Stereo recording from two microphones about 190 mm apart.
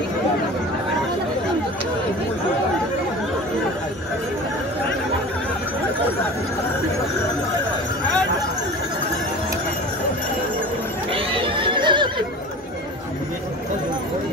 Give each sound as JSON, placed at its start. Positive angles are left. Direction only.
{"t": 11.1, "sound": "neigh", "side_deg": -25}